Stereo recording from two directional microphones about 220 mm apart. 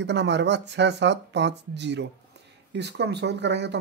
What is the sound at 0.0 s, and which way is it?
Speech, 55° right (ahead or behind).